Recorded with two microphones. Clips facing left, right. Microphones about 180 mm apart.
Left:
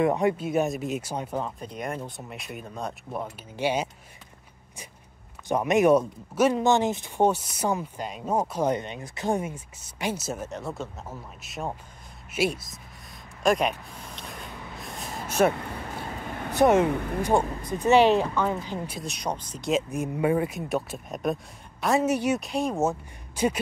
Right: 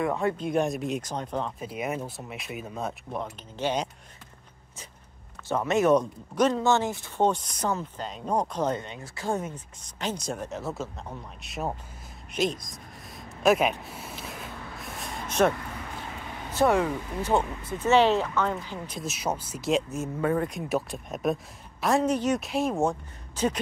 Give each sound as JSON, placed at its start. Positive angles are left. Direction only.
{"t": 0.0, "sound": "speech", "side_deg": 15}
{"t": 0.4, "sound": "speech", "side_deg": 5}
{"t": 1.6, "sound": "speech", "side_deg": -5}
{"t": 3.2, "sound": "speech", "side_deg": 10}
{"t": 5.5, "sound": "speech", "side_deg": 15}
{"t": 7.2, "sound": "speech", "side_deg": 5}
{"t": 13.4, "sound": "a sound", "side_deg": -5}
{"t": 16.5, "sound": "speech", "side_deg": 20}
{"t": 16.9, "sound": "speech", "side_deg": 60}
{"t": 17.4, "sound": "speech", "side_deg": 35}
{"t": 17.6, "sound": "speech", "side_deg": 15}
{"t": 19.0, "sound": "speech", "side_deg": -5}
{"t": 19.9, "sound": "speech", "side_deg": 15}